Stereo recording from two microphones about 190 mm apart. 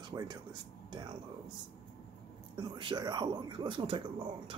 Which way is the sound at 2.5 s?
25° right (ahead or behind).